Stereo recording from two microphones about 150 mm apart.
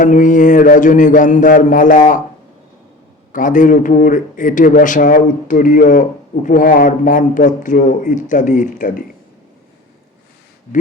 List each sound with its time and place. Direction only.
0.0 s speech: 60° left (ahead or behind)
3.3 s speech: 60° left (ahead or behind)